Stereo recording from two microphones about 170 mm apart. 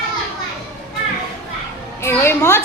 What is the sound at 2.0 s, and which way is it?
Speech, 15° left (ahead or behind).